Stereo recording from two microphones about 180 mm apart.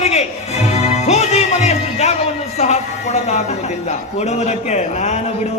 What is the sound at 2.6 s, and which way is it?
A man's voice, 40° left (ahead or behind).